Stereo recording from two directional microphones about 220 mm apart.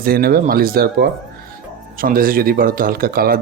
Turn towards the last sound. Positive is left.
turn(degrees=-45)  # may be behind; listen again after turning